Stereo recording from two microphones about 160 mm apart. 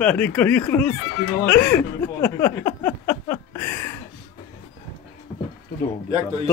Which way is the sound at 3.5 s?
15° left (ahead or behind).